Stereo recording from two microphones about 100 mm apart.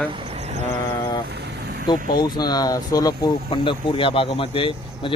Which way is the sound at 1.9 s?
45° left (ahead or behind).